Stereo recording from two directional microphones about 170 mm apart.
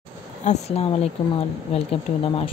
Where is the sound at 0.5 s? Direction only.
40° left (ahead or behind).